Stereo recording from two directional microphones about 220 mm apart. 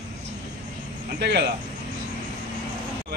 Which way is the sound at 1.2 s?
50° right (ahead or behind).